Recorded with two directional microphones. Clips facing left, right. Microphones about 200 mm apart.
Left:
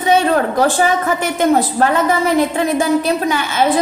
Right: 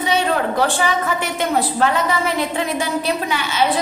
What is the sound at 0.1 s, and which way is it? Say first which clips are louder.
A woman's voice: left 6 dB; 45° left (ahead or behind).